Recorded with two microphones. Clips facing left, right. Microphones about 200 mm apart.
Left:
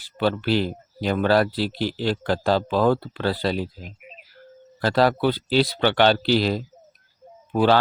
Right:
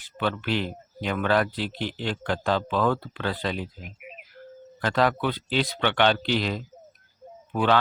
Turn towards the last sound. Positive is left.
turn(degrees=35)  # may be behind; listen again after turning